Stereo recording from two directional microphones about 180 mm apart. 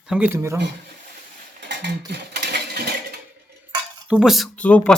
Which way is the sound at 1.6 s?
70° right (ahead or behind).